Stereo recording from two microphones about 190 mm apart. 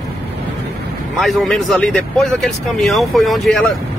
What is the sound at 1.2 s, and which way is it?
Speech, centre (ahead or behind).